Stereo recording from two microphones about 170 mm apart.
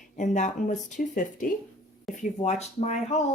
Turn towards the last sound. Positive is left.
turn(degrees=40)  # may be behind; listen again after turning